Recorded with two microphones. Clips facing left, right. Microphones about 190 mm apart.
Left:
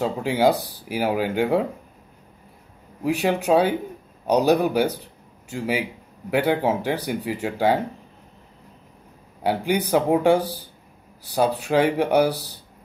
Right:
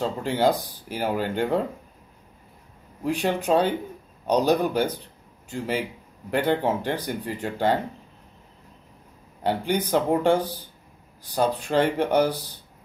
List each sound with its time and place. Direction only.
0.0 s speech: 10° left (ahead or behind)
3.0 s speech: 10° left (ahead or behind)
5.0 s a sound: 10° left (ahead or behind)
6.3 s speech: 10° left (ahead or behind)
9.4 s speech: 10° left (ahead or behind)